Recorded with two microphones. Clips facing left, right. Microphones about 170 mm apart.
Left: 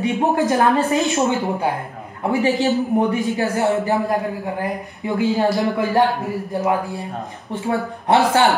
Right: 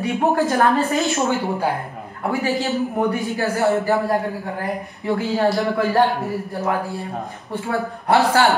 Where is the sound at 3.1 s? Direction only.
20° left (ahead or behind).